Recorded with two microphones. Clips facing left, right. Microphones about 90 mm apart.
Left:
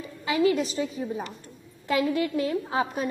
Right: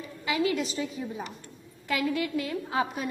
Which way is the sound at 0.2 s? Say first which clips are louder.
Left 4 dB; 35° left (ahead or behind).